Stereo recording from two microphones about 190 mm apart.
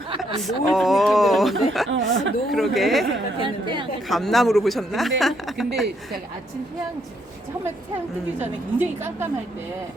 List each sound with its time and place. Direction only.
0.4 s speech: centre (ahead or behind)
1.9 s speech: 80° right
2.5 s speech: centre (ahead or behind)
3.4 s chatter: 25° right (ahead or behind)
4.1 s speech: centre (ahead or behind)